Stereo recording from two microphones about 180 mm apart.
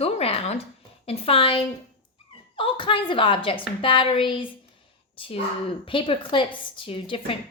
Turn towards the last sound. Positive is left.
turn(degrees=30)  # may be behind; listen again after turning